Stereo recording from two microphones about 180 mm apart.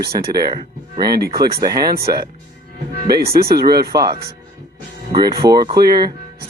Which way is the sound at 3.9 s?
20° right (ahead or behind).